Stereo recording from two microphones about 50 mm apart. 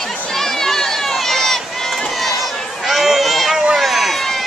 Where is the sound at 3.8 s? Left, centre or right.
Centre.